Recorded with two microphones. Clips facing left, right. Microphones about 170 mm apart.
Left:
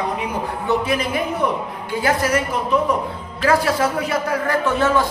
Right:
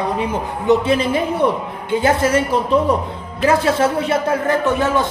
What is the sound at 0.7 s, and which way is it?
A man's voice, 25° right (ahead or behind).